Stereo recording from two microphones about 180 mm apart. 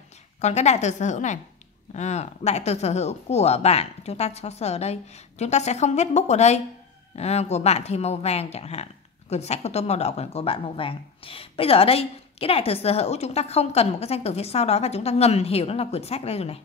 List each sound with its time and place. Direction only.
0.4 s speech: 40° left (ahead or behind)